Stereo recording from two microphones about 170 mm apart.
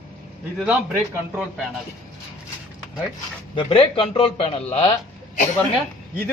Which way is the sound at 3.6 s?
30° left (ahead or behind).